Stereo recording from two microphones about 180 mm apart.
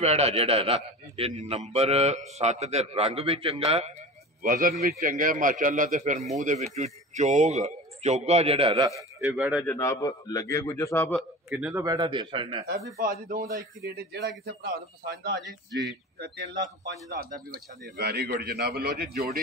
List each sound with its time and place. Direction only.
0.0 s a man's voice: 35° right (ahead or behind)
4.4 s a man's voice: 50° right (ahead or behind); by 8.7 s 30° right (ahead or behind)
9.2 s speech: 5° right (ahead or behind)
9.7 s a man's voice: 15° left (ahead or behind)
11.1 s a man's voice: 5° right (ahead or behind)
11.8 s a man's voice: 20° right (ahead or behind)
12.9 s a man's voice: 55° right (ahead or behind)
13.5 s a man's voice: 20° right (ahead or behind)
13.9 s a man's voice: 65° right (ahead or behind)